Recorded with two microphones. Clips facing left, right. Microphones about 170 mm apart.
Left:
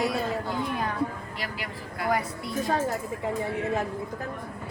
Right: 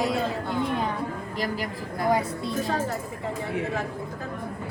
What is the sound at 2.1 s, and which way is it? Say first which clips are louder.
Speech: right 3 dB; 25° right (ahead or behind).